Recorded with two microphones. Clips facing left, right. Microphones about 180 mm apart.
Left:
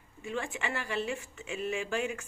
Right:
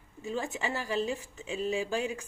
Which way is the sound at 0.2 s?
40° right (ahead or behind).